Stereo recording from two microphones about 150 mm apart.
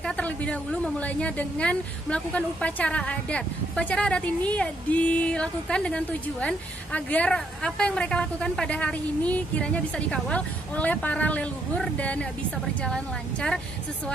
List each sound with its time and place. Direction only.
0.0 s a woman's voice: 10° left (ahead or behind)